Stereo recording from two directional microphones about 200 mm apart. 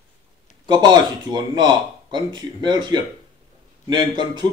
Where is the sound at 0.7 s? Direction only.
20° right (ahead or behind).